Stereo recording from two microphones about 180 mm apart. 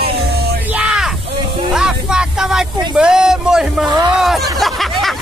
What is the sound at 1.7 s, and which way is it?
Music, 5° right (ahead or behind).